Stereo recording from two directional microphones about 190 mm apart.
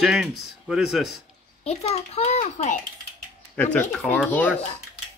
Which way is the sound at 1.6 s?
35° left (ahead or behind).